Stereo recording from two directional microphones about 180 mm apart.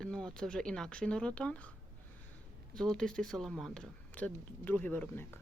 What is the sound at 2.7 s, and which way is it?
Speech, 5° left (ahead or behind).